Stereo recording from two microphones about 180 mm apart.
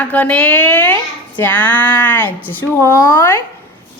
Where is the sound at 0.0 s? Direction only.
10° left (ahead or behind).